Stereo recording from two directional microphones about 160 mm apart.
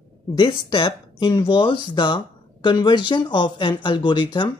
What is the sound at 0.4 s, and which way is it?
Speech, 30° left (ahead or behind).